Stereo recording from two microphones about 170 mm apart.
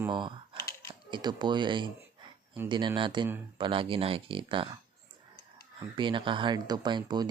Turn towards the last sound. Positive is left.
turn(degrees=-25)  # may be behind; listen again after turning